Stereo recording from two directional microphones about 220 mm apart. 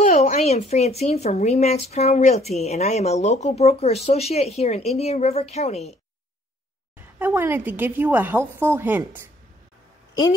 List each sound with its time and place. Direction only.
0.0 s speech: 35° left (ahead or behind)
7.2 s a woman's voice: 10° right (ahead or behind)